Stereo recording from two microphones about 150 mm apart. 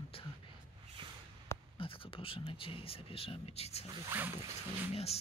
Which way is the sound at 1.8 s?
35° left (ahead or behind).